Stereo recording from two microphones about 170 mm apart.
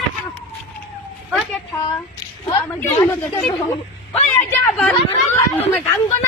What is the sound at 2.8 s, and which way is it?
Speech, 15° left (ahead or behind).